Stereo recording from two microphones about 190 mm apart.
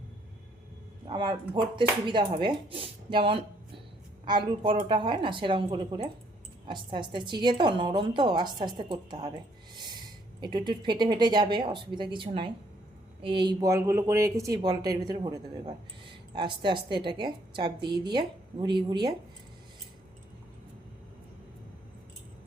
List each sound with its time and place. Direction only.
1.0 s a woman's voice: 25° right (ahead or behind)
9.7 s a sound: 25° right (ahead or behind)
10.4 s a woman's voice: 25° right (ahead or behind)